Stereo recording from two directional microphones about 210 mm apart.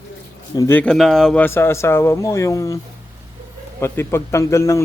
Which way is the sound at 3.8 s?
10° left (ahead or behind).